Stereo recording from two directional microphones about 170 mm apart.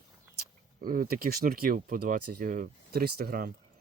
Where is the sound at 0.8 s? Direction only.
55° right (ahead or behind).